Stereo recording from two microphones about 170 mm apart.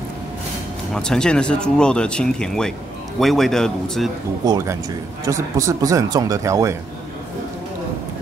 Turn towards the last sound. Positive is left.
turn(degrees=-20)  # may be behind; listen again after turning